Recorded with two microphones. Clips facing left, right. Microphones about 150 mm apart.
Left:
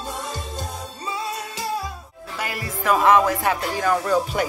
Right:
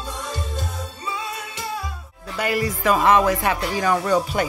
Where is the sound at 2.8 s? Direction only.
Centre (ahead or behind).